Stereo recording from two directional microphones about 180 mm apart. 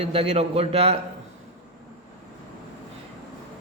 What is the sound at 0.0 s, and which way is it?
Speech, 30° right (ahead or behind).